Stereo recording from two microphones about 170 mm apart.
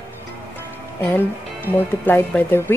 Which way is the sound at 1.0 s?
10° left (ahead or behind).